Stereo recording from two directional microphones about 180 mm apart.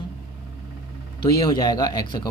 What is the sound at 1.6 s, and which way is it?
Speech, 20° left (ahead or behind).